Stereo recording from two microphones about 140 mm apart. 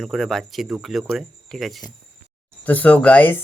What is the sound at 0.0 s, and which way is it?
Speech, centre (ahead or behind).